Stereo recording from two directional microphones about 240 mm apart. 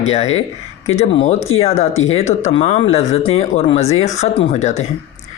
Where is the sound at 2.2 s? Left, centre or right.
Left.